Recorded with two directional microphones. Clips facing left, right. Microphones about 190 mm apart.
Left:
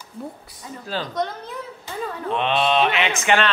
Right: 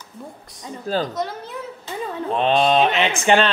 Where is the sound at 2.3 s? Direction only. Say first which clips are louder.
Right 3 dB; 35° right (ahead or behind).